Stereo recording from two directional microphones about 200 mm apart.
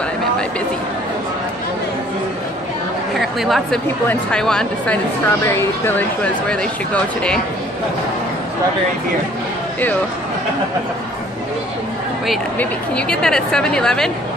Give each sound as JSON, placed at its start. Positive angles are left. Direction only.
{"t": 3.2, "sound": "a woman's voice", "side_deg": 0}
{"t": 6.5, "sound": "a woman's voice", "side_deg": 5}
{"t": 12.3, "sound": "a woman's voice", "side_deg": 5}